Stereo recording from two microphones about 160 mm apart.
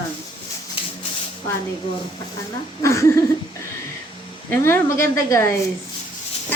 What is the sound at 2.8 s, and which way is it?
Speech, 20° left (ahead or behind).